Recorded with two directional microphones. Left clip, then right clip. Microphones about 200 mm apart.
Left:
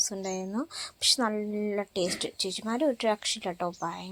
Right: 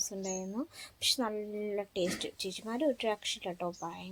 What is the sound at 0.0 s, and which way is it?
Speech, 20° left (ahead or behind).